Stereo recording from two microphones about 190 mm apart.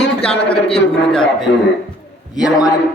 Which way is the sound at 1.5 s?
65° left (ahead or behind).